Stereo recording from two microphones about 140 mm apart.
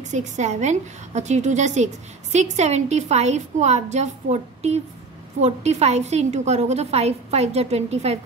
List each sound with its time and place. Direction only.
0.1 s a woman's voice: 55° right (ahead or behind)